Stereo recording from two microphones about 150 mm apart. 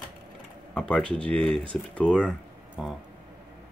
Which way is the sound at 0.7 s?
5° left (ahead or behind).